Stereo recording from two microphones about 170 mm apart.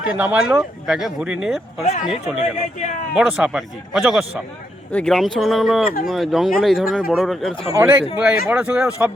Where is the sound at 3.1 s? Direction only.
5° right (ahead or behind).